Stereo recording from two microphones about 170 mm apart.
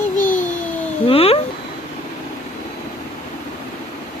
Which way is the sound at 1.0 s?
35° left (ahead or behind).